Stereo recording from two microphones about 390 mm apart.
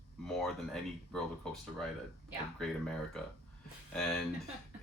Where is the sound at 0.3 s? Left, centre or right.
Centre.